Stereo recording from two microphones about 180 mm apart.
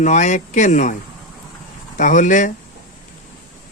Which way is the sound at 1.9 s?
45° left (ahead or behind).